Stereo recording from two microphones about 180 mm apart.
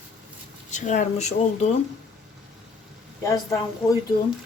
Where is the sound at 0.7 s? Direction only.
40° left (ahead or behind).